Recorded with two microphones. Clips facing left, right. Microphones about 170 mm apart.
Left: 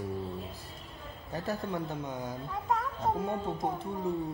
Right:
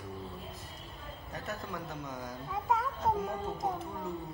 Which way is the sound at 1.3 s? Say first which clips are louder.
Left 7 dB; 30° left (ahead or behind).